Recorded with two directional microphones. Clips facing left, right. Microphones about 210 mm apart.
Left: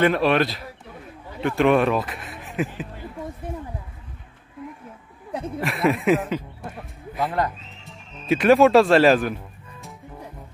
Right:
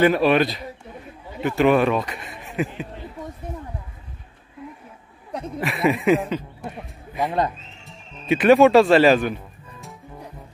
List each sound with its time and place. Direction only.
0.0 s speech: centre (ahead or behind)
5.3 s speech: centre (ahead or behind)
7.2 s speech: 20° right (ahead or behind)
7.8 s music: centre (ahead or behind)